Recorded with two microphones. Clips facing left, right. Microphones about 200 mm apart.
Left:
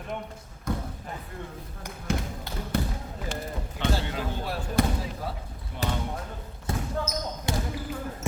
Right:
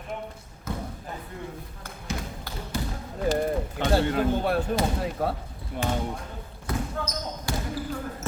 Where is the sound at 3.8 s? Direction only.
55° right (ahead or behind).